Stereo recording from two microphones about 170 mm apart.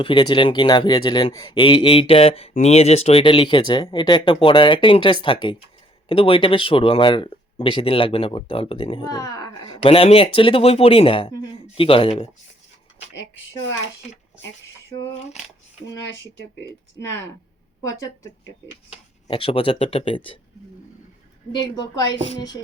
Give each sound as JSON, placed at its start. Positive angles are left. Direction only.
{"t": 0.0, "sound": "speech", "side_deg": 30}
{"t": 9.8, "sound": "speech", "side_deg": 35}
{"t": 17.8, "sound": "speech", "side_deg": 20}
{"t": 18.9, "sound": "speech", "side_deg": 30}
{"t": 21.5, "sound": "speech", "side_deg": 25}